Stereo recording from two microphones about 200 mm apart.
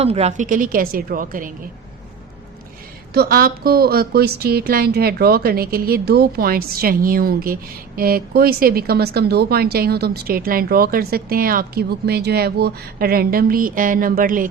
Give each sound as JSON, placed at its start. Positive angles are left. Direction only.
{"t": 0.0, "sound": "speech", "side_deg": -30}
{"t": 3.1, "sound": "speech", "side_deg": -50}